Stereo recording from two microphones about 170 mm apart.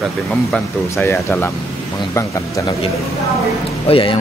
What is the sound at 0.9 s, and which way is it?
Speech, 15° left (ahead or behind).